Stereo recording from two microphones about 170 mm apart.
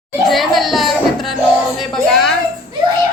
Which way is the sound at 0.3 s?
Centre (ahead or behind).